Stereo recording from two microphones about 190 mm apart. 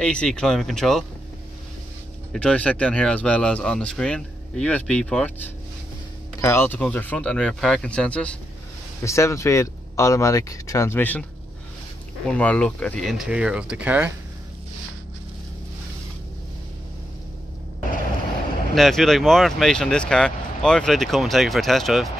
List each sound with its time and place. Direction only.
0.0 s speech: 5° left (ahead or behind)
2.3 s speech: 5° left (ahead or behind)
12.3 s speech: 5° left (ahead or behind); by 14.1 s 10° right (ahead or behind)
18.8 s speech: centre (ahead or behind)